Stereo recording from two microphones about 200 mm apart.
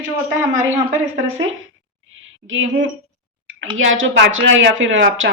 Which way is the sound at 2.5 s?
75° right (ahead or behind).